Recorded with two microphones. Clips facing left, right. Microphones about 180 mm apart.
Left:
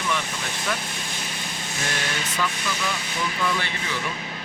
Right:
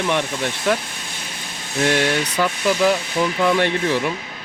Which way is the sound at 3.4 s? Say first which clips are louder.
Right 11 dB; 60° right (ahead or behind).